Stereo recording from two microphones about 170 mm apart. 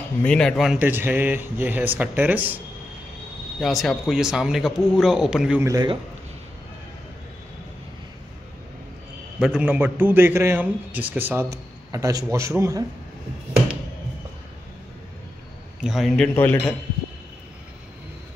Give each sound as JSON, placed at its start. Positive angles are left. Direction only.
{"t": 0.2, "sound": "speech", "side_deg": 5}
{"t": 0.7, "sound": "a man's voice", "side_deg": -10}
{"t": 3.6, "sound": "speech", "side_deg": 0}
{"t": 5.7, "sound": "a man's voice", "side_deg": -25}
{"t": 9.4, "sound": "a man's voice", "side_deg": -5}
{"t": 15.8, "sound": "speech", "side_deg": 0}